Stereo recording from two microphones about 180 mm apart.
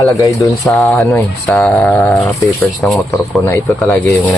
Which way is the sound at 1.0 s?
15° left (ahead or behind).